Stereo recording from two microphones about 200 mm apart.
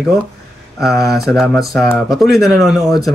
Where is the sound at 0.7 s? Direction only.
Centre (ahead or behind).